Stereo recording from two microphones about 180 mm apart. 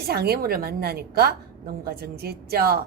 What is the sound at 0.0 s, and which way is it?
A woman's voice, 60° right (ahead or behind).